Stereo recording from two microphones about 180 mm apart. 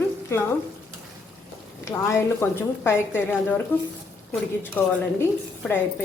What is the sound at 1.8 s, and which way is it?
A woman's voice, 15° left (ahead or behind).